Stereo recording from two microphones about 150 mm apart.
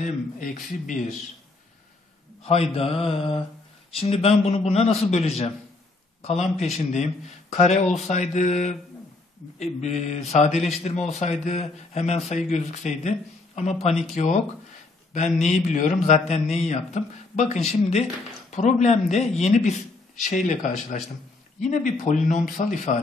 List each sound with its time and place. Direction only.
0.0 s speech: 60° left (ahead or behind)
2.4 s a man's voice: 40° left (ahead or behind)
14.1 s a man's voice: 55° left (ahead or behind)